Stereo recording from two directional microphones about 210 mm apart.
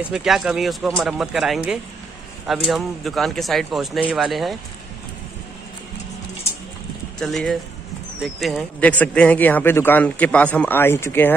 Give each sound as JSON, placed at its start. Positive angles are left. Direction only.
{"t": 0.1, "sound": "speech", "side_deg": 0}
{"t": 7.2, "sound": "speech", "side_deg": 0}